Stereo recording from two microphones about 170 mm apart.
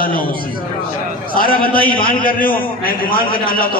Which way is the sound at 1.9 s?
55° left (ahead or behind).